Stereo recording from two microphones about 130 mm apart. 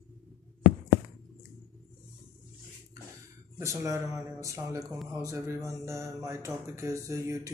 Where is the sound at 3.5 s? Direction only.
25° right (ahead or behind).